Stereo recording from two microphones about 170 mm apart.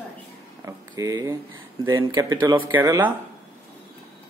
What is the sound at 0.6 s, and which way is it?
Speech, 20° right (ahead or behind).